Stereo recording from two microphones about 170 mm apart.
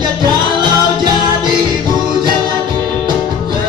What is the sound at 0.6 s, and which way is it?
Music, 25° right (ahead or behind).